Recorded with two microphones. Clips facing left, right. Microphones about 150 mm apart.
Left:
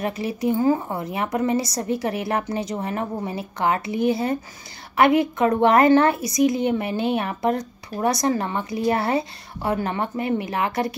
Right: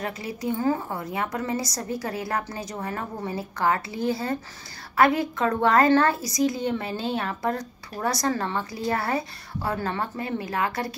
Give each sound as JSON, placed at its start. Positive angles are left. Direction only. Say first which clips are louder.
{"t": 0.0, "sound": "a woman's voice", "louder": "left 6 dB", "side_deg": 20}